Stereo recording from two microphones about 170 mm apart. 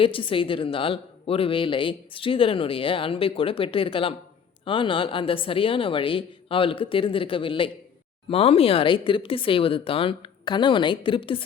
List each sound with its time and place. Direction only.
0.0 s a woman's voice: 30° left (ahead or behind)